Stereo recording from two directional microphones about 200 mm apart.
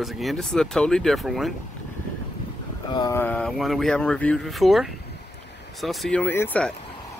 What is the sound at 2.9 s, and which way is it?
Speech, 20° left (ahead or behind).